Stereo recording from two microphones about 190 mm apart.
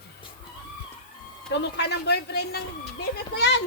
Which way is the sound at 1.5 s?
60° left (ahead or behind).